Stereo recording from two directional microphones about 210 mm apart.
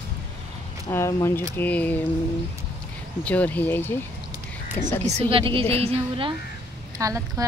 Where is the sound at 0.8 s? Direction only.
15° left (ahead or behind).